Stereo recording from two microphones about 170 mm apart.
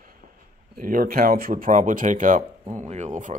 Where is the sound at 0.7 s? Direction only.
55° right (ahead or behind).